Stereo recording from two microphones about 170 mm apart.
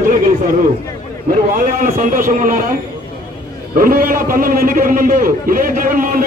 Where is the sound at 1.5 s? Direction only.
50° right (ahead or behind).